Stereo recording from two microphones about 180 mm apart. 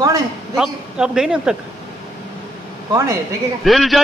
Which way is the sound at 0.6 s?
5° right (ahead or behind).